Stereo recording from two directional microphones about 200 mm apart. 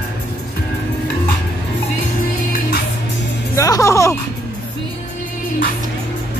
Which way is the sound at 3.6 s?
15° left (ahead or behind).